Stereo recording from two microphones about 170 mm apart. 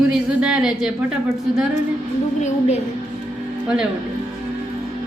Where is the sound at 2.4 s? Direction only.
40° left (ahead or behind).